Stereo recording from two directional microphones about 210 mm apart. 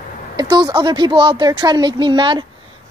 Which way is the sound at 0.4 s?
20° right (ahead or behind).